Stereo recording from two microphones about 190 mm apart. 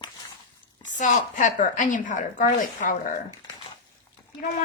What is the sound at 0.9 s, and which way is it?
A woman's voice, 40° left (ahead or behind).